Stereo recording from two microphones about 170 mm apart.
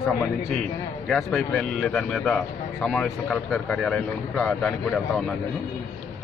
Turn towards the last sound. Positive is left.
turn(degrees=5)  # may be behind; listen again after turning